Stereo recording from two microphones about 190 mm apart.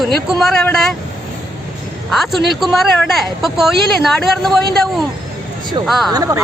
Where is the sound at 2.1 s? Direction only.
Centre (ahead or behind).